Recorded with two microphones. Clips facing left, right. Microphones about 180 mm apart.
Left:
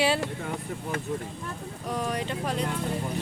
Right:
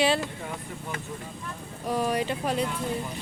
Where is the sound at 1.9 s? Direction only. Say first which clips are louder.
Right 4 dB; 10° right (ahead or behind).